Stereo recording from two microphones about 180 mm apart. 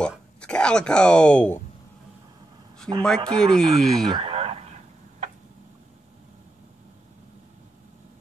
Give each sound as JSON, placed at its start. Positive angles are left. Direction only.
{"t": 0.0, "sound": "speech", "side_deg": 5}
{"t": 2.9, "sound": "speech", "side_deg": 10}
{"t": 4.1, "sound": "a sound", "side_deg": -35}